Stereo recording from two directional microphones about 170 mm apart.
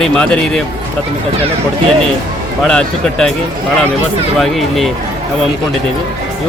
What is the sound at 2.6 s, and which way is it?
Speech, 5° left (ahead or behind).